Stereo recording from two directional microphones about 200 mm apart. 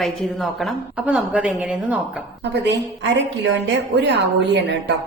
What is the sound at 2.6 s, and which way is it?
Speech, 60° right (ahead or behind).